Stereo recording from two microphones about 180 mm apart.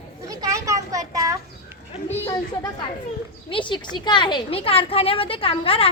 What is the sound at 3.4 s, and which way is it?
A woman's voice, 30° left (ahead or behind).